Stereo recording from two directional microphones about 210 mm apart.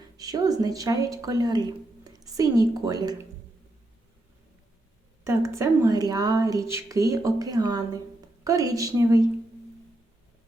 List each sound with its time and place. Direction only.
0.2 s a woman's voice: 15° right (ahead or behind)
5.2 s speech: 15° right (ahead or behind)